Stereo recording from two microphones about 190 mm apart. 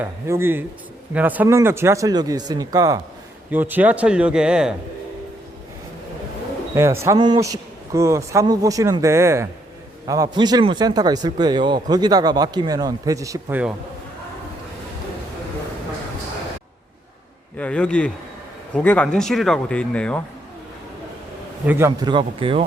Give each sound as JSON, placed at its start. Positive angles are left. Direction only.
{"t": 0.0, "sound": "a man's voice", "side_deg": -10}
{"t": 6.7, "sound": "a man's voice", "side_deg": -15}
{"t": 17.6, "sound": "speech", "side_deg": 5}
{"t": 21.7, "sound": "speech", "side_deg": -15}